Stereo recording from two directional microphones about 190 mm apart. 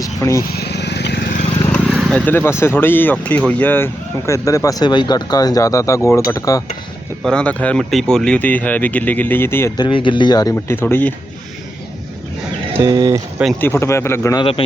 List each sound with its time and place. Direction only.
0.0 s speech: 15° left (ahead or behind)
0.4 s vehicle: 55° left (ahead or behind)
1.7 s speech: centre (ahead or behind); by 6.6 s 20° left (ahead or behind)
7.2 s speech: 5° left (ahead or behind)
12.8 s speech: 20° right (ahead or behind)
13.6 s speech: 10° left (ahead or behind)